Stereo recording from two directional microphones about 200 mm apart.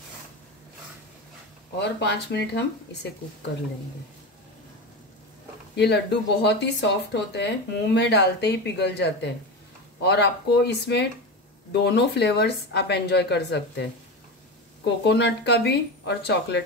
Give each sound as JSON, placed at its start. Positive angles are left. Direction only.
{"t": 1.8, "sound": "speech", "side_deg": 60}
{"t": 5.8, "sound": "speech", "side_deg": 55}
{"t": 15.0, "sound": "speech", "side_deg": 55}